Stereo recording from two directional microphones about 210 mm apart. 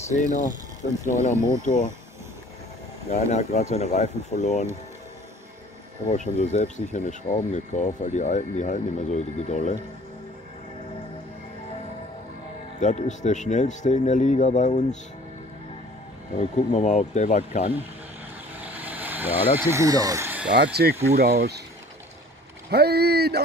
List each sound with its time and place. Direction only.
0.1 s speech: 35° left (ahead or behind)
1.6 s speech: 35° left (ahead or behind)
3.1 s speech: 35° left (ahead or behind)
6.0 s speech: 35° left (ahead or behind)
12.8 s speech: 35° left (ahead or behind)
16.3 s speech: 35° left (ahead or behind)
18.6 s vehicle: 5° right (ahead or behind)
20.5 s speech: 50° right (ahead or behind)
22.7 s speech: 50° right (ahead or behind)